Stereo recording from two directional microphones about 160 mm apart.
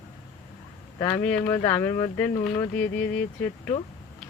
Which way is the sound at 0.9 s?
20° left (ahead or behind).